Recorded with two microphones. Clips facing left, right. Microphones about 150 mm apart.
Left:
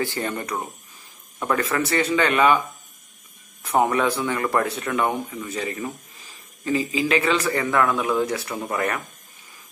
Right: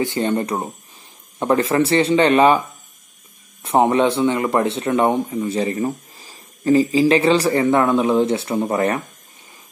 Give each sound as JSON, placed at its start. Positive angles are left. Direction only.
{"t": 0.0, "sound": "speech", "side_deg": -25}
{"t": 3.6, "sound": "speech", "side_deg": -25}